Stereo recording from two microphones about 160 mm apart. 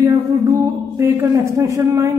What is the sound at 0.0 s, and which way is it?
Music, 20° right (ahead or behind).